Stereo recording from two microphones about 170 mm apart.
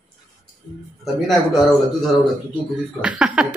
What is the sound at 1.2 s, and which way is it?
A woman's voice, centre (ahead or behind).